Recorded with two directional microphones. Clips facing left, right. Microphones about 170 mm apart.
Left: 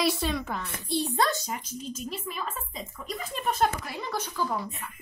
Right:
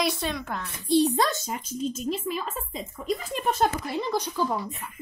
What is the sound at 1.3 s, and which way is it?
Speech, 25° right (ahead or behind).